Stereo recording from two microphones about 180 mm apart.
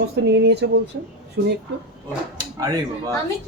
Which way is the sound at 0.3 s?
70° right (ahead or behind).